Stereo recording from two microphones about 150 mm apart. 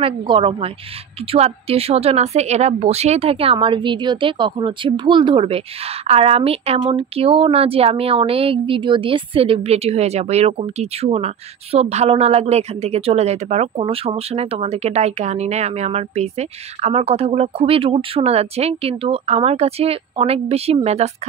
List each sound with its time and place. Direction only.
0.0 s a woman's voice: 35° right (ahead or behind)